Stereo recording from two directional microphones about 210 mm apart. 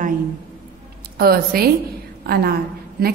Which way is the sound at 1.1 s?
45° right (ahead or behind).